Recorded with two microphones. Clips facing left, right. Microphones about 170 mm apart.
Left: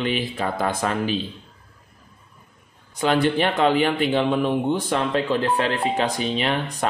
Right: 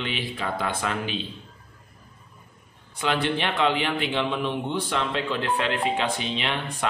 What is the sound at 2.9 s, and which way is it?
A man's voice, 40° left (ahead or behind).